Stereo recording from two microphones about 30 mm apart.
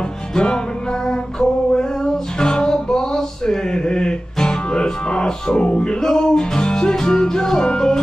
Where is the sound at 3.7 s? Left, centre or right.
Left.